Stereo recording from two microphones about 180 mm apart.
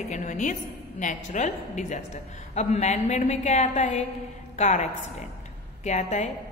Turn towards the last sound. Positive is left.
turn(degrees=40)  # may be behind; listen again after turning